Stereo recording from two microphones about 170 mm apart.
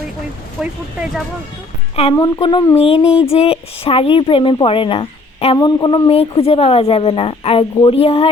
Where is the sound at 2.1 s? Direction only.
25° left (ahead or behind).